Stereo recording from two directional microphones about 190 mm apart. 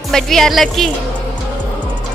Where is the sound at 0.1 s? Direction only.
Centre (ahead or behind).